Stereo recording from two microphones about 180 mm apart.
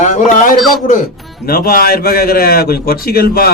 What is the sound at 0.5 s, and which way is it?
Speech, centre (ahead or behind).